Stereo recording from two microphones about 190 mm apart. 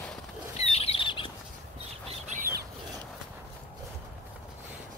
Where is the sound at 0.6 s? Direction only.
30° left (ahead or behind).